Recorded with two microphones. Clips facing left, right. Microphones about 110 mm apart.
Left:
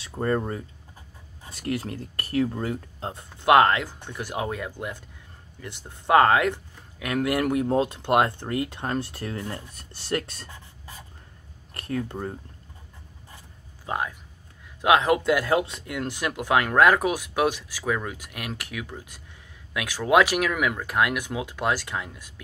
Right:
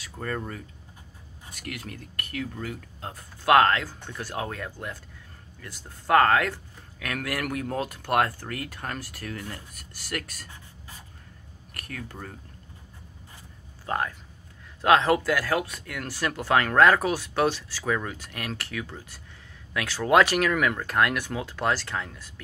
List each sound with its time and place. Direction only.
0.0 s speech: 30° left (ahead or behind)
11.7 s speech: 25° left (ahead or behind)
13.8 s speech: 10° left (ahead or behind)